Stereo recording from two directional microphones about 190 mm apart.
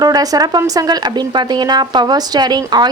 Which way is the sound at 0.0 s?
20° right (ahead or behind).